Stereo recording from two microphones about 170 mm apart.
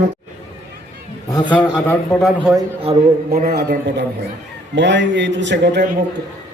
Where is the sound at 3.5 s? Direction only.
75° right (ahead or behind).